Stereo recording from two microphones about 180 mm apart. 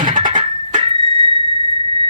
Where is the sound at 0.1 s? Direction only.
45° right (ahead or behind).